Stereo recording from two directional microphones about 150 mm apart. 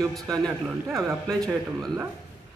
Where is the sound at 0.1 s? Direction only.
Centre (ahead or behind).